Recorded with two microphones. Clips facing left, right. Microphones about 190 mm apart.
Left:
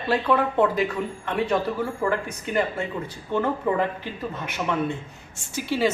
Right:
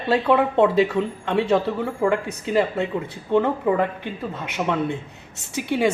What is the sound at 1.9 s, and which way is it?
A woman's voice, 15° right (ahead or behind).